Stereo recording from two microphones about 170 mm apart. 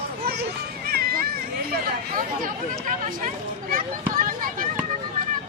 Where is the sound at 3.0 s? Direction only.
50° right (ahead or behind).